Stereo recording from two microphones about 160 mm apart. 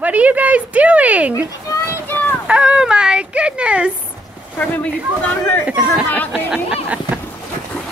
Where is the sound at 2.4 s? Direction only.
5° right (ahead or behind).